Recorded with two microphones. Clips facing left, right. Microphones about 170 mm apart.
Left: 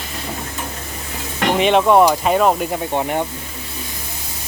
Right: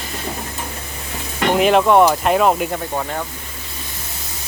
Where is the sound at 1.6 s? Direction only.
Centre (ahead or behind).